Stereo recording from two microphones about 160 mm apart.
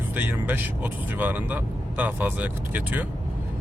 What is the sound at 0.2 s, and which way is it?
Speech, 10° right (ahead or behind).